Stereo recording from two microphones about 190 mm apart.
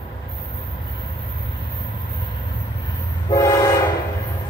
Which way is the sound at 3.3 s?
20° left (ahead or behind).